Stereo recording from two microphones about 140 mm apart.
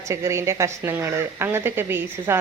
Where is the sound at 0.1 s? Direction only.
20° right (ahead or behind).